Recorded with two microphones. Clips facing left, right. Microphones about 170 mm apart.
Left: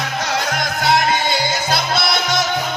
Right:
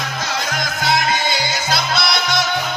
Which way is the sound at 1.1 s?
50° left (ahead or behind).